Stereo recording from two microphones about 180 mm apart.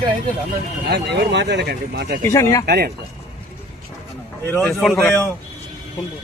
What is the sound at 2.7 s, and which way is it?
Speech, 65° right (ahead or behind).